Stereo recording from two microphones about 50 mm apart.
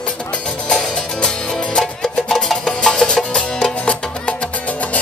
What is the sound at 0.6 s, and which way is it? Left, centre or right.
Music, centre.